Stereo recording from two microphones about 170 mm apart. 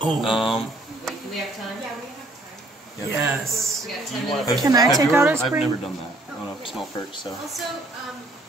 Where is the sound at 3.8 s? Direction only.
Centre (ahead or behind).